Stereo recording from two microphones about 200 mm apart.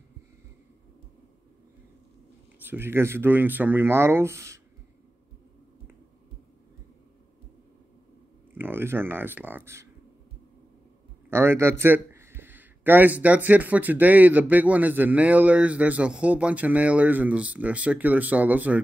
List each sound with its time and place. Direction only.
2.6 s a man's voice: 10° right (ahead or behind)
8.5 s speech: 10° right (ahead or behind)
11.2 s a man's voice: 10° right (ahead or behind)